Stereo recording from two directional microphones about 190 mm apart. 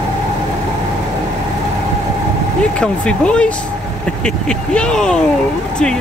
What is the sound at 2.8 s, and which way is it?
Speech, 5° left (ahead or behind).